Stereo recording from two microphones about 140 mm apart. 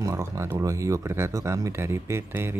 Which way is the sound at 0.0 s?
20° right (ahead or behind).